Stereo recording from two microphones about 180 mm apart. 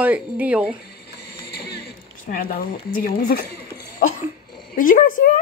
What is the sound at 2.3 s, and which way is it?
Speech, 50° left (ahead or behind).